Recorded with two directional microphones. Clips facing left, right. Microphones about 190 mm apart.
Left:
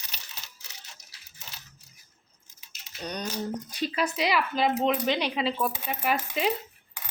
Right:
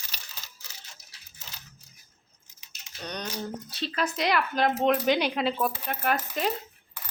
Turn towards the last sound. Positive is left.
turn(degrees=10)  # may be behind; listen again after turning